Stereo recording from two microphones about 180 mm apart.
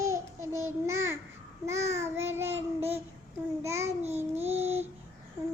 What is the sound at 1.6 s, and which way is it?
Child singing, 15° right (ahead or behind).